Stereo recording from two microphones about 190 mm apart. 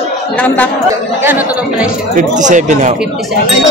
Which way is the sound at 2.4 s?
40° right (ahead or behind).